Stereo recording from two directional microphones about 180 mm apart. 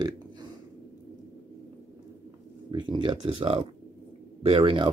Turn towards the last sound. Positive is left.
turn(degrees=-30)  # may be behind; listen again after turning